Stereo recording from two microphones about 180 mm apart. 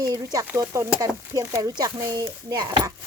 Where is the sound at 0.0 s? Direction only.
20° right (ahead or behind).